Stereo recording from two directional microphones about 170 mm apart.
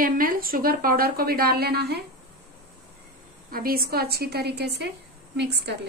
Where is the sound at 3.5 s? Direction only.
60° right (ahead or behind); by 5.9 s 80° right.